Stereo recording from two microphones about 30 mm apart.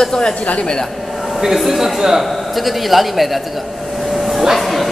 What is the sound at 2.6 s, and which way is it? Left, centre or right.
Speech, centre.